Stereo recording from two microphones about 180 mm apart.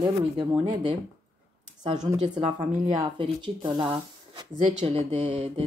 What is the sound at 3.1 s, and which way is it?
Speech, 25° right (ahead or behind).